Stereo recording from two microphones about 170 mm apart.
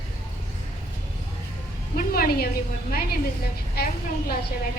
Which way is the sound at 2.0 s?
60° left (ahead or behind).